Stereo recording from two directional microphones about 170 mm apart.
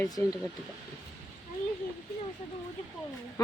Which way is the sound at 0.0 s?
20° left (ahead or behind).